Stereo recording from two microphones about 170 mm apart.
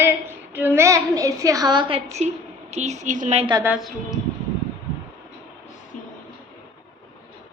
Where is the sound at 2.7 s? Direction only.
40° right (ahead or behind).